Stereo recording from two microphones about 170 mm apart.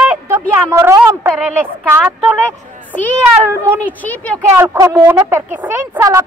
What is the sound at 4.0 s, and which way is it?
Speech, 10° left (ahead or behind).